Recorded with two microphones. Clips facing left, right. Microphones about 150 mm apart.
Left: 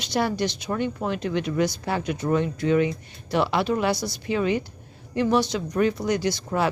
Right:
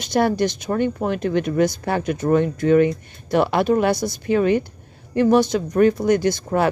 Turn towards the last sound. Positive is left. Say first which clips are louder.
# right 5 dB
turn(degrees=-50)  # may be behind; listen again after turning